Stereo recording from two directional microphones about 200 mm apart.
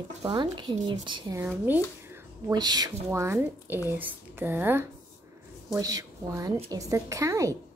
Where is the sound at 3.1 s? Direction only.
10° right (ahead or behind).